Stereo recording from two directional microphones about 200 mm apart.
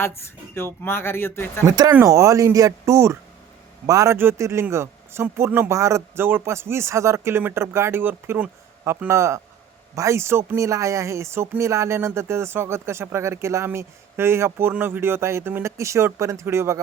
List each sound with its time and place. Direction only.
0.2 s speech: 10° left (ahead or behind)
1.6 s speech: 20° right (ahead or behind)